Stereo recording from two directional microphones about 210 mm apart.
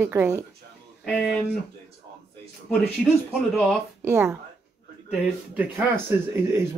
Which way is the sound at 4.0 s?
15° right (ahead or behind).